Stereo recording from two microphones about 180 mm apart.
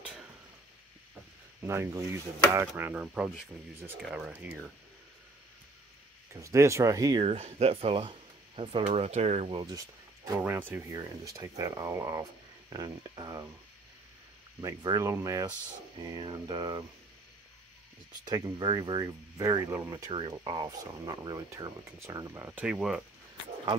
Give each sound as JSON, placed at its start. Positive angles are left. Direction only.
{"t": 1.6, "sound": "speech", "side_deg": -15}
{"t": 6.3, "sound": "speech", "side_deg": -15}
{"t": 7.2, "sound": "speech", "side_deg": -35}
{"t": 14.6, "sound": "speech", "side_deg": -20}
{"t": 18.2, "sound": "speech", "side_deg": -20}